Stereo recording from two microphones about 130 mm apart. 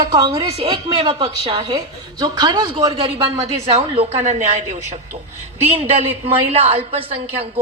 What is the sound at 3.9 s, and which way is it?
Speech, 55° right (ahead or behind).